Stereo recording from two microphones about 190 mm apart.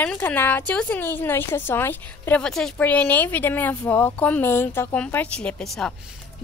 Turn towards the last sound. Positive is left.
turn(degrees=0)  # may be behind; listen again after turning